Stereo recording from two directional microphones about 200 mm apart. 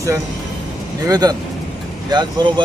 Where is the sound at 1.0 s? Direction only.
20° right (ahead or behind).